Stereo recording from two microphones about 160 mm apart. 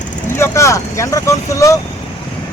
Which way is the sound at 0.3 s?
15° left (ahead or behind).